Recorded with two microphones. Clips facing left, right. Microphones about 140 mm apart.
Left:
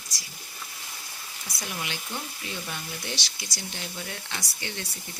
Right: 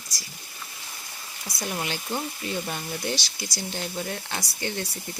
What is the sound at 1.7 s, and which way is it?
Speech, 40° right (ahead or behind).